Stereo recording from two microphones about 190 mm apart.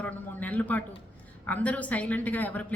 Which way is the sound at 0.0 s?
10° left (ahead or behind).